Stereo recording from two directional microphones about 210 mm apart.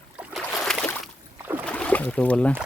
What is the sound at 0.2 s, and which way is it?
Boat, centre (ahead or behind).